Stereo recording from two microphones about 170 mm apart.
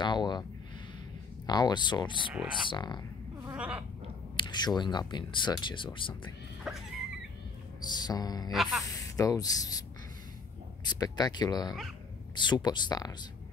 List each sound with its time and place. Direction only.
0.0 s a sound: 25° left (ahead or behind)
1.4 s speech: 25° left (ahead or behind)
3.5 s goat: 10° right (ahead or behind)
4.4 s speech: 25° left (ahead or behind)
6.7 s speech: 5° right (ahead or behind)
7.9 s speech: 25° left (ahead or behind)
8.5 s speech: centre (ahead or behind)
8.8 s speech: 20° left (ahead or behind)
10.9 s speech: 25° left (ahead or behind)